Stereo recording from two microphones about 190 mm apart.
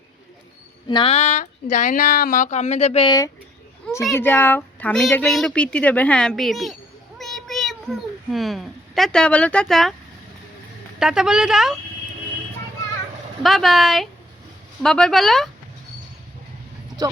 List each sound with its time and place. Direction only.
0.9 s speech: 25° left (ahead or behind)
4.1 s speech: 10° left (ahead or behind)
7.2 s a sound: centre (ahead or behind)
11.0 s speech: 5° right (ahead or behind)
13.4 s speech: centre (ahead or behind)